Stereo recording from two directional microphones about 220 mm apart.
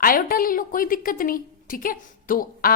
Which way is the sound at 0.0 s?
40° left (ahead or behind).